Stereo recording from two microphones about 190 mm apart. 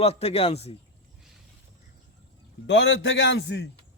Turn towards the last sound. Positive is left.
turn(degrees=65)  # may be behind; listen again after turning